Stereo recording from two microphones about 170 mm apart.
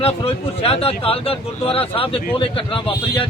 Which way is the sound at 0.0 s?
35° left (ahead or behind).